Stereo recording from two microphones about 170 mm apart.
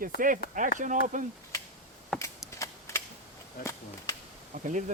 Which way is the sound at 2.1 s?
5° left (ahead or behind).